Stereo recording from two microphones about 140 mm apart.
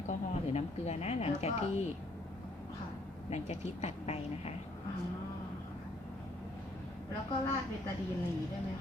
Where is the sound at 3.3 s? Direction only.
50° left (ahead or behind).